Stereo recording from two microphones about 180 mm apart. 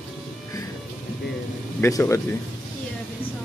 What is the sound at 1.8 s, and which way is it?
Speech, 15° left (ahead or behind).